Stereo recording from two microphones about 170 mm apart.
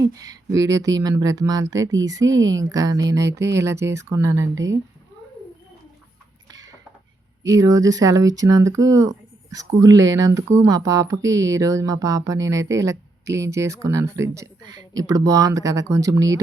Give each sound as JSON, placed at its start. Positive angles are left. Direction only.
{"t": 0.1, "sound": "speech", "side_deg": -20}
{"t": 7.5, "sound": "speech", "side_deg": -20}